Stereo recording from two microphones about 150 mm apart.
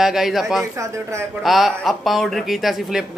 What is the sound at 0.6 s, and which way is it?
Speech, 20° right (ahead or behind).